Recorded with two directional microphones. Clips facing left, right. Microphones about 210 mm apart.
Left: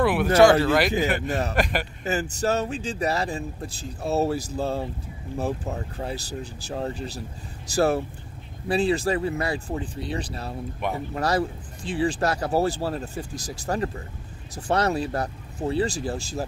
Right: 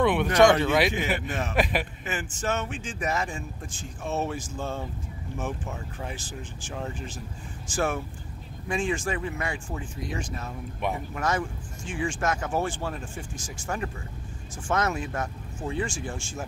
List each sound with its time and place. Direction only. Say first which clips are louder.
0.0 s speech: left 3 dB; 5° left (ahead or behind)
1.2 s speech: left 5 dB; 40° left (ahead or behind)
1.5 s speech: left 1 dB; centre (ahead or behind)
2.0 s speech: left 6 dB; 40° left (ahead or behind)
10.8 s speech: left 1 dB; centre (ahead or behind)
11.1 s speech: left 4 dB; 35° left (ahead or behind)